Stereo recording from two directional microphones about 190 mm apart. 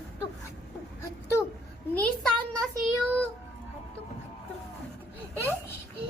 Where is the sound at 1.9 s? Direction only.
5° left (ahead or behind).